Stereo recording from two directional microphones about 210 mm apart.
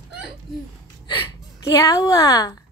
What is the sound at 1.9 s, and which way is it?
Speech, 15° left (ahead or behind).